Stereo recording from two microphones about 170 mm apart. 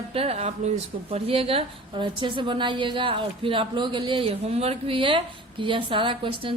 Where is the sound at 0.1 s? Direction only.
35° right (ahead or behind).